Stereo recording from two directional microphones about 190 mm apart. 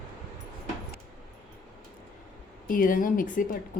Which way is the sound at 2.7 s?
45° left (ahead or behind).